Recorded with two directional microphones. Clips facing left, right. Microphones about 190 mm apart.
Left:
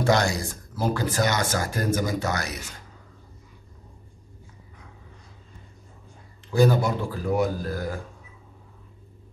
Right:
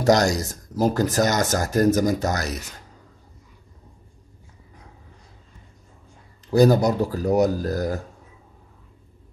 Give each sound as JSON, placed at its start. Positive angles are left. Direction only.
{"t": 0.0, "sound": "speech", "side_deg": -40}
{"t": 6.5, "sound": "speech", "side_deg": -40}